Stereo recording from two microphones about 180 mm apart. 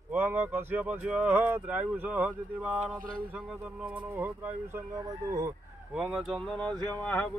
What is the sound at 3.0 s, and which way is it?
Speech, 50° right (ahead or behind).